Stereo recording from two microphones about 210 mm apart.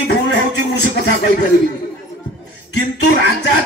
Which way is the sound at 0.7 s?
55° left (ahead or behind).